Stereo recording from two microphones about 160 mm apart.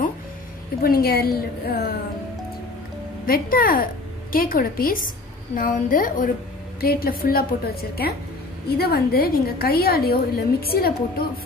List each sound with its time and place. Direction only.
0.8 s a woman's voice: 70° left (ahead or behind)
3.3 s a woman's voice: 65° left (ahead or behind)
6.8 s a woman's voice: 70° left (ahead or behind)